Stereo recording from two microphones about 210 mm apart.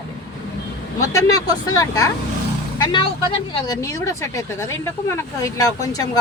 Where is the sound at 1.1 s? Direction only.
15° left (ahead or behind).